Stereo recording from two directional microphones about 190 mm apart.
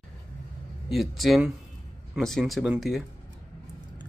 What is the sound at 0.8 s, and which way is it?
Speech, centre (ahead or behind).